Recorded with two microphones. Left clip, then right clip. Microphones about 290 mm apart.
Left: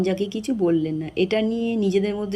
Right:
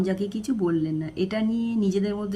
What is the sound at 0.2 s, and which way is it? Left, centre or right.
Speech, centre.